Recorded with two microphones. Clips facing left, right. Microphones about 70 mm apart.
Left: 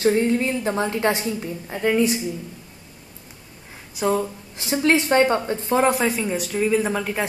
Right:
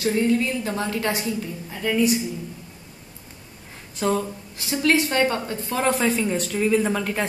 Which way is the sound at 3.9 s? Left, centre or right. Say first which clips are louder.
Left 2 dB; centre.